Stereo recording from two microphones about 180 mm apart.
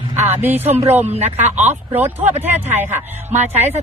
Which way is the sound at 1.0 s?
40° right (ahead or behind).